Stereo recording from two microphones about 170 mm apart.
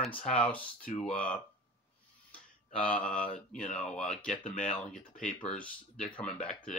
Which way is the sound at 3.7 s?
5° left (ahead or behind).